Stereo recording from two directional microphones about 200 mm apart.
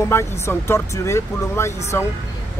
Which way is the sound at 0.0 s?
15° left (ahead or behind).